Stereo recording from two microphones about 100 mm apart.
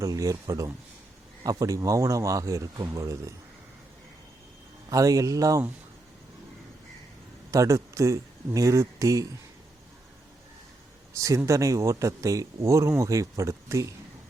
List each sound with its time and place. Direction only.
0.0 s speech: 35° right (ahead or behind)
4.9 s speech: 35° right (ahead or behind)
7.5 s speech: 35° right (ahead or behind)
11.1 s speech: 35° right (ahead or behind)